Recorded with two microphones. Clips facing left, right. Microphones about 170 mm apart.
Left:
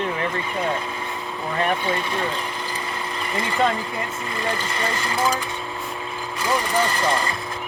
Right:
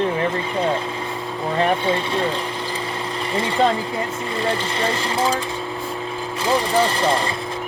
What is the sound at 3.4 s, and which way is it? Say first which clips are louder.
Speech: right 3 dB; 30° right (ahead or behind).